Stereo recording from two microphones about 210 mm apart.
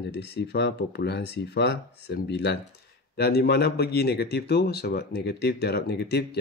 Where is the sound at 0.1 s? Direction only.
55° left (ahead or behind).